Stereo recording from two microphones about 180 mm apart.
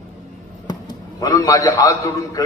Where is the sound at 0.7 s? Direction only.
20° left (ahead or behind).